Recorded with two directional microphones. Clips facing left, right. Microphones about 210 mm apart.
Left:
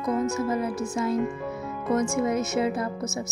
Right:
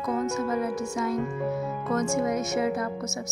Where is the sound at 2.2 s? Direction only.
25° left (ahead or behind).